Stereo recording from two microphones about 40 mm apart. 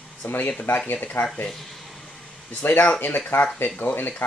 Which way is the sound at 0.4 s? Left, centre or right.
Left.